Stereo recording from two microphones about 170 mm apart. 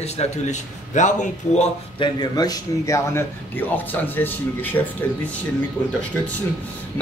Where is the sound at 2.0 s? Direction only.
25° left (ahead or behind).